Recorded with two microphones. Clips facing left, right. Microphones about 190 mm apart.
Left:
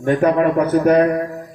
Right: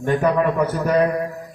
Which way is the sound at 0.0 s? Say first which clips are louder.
Left 3 dB; 60° left (ahead or behind).